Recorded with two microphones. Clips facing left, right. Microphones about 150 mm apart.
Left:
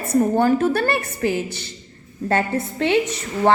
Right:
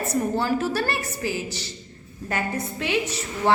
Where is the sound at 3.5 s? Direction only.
55° left (ahead or behind).